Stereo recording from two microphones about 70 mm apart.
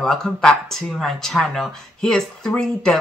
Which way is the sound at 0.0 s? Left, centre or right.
Centre.